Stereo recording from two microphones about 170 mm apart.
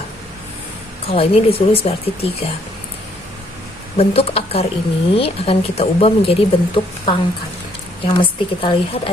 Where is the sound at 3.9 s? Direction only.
35° left (ahead or behind).